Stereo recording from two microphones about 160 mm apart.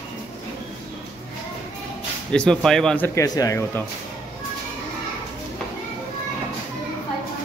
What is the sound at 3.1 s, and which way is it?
Speech, 20° left (ahead or behind).